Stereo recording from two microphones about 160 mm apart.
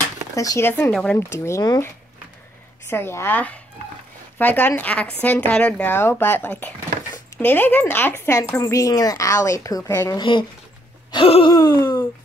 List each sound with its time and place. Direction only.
0.4 s a woman's voice: 20° left (ahead or behind)
1.3 s speech: 20° left (ahead or behind)
2.9 s a woman's voice: 15° left (ahead or behind)
11.1 s groan: 35° left (ahead or behind)
11.5 s a sound: 20° left (ahead or behind)